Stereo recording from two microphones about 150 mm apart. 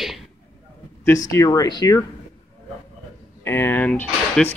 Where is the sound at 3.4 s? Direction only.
15° left (ahead or behind).